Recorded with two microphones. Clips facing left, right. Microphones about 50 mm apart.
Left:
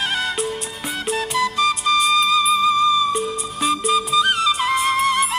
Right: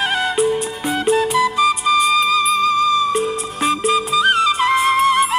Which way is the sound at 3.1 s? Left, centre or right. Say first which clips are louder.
Right 4 dB; right.